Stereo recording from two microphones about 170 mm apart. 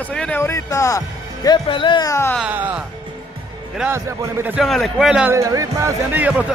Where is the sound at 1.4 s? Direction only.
30° left (ahead or behind).